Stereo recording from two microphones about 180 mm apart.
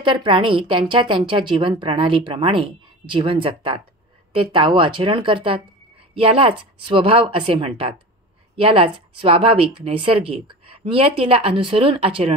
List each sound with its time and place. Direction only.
0.0 s speech: 25° right (ahead or behind)